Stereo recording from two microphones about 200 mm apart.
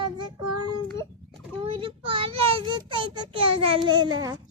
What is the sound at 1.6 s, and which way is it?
A child's voice, 25° right (ahead or behind).